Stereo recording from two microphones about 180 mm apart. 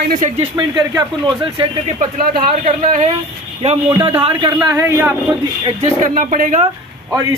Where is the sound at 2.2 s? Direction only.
50° right (ahead or behind).